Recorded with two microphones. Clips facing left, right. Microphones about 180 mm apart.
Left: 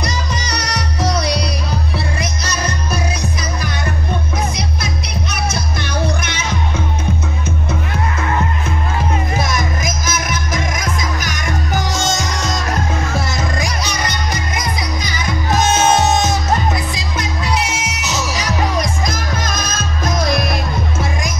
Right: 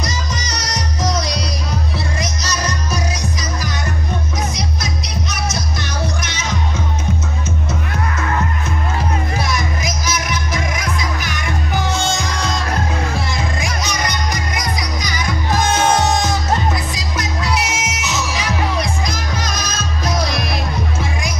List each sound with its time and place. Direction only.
0.0 s music: 60° left (ahead or behind)
9.4 s music: 45° left (ahead or behind); by 16.3 s 25° left (ahead or behind)
17.6 s music: 30° left (ahead or behind); by 20.5 s 50° left (ahead or behind)